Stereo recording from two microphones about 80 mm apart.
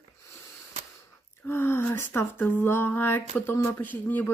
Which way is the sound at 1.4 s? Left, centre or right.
Left.